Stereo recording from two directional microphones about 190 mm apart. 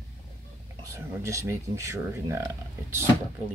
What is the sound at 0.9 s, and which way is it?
Speech, 15° right (ahead or behind).